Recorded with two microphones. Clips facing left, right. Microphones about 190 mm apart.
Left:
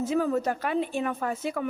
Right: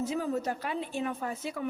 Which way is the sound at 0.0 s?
55° left (ahead or behind).